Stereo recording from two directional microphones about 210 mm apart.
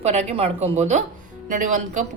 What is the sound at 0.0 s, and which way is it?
Speech, 30° right (ahead or behind).